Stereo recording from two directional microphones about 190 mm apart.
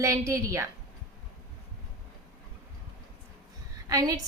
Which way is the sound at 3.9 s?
20° right (ahead or behind).